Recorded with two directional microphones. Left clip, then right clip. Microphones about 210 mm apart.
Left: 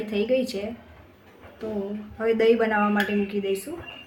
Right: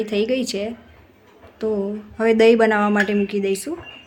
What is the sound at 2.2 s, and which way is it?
Speech, 50° right (ahead or behind).